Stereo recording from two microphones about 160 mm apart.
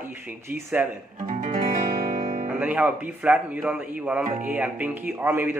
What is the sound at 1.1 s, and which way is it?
Guitar, 55° right (ahead or behind).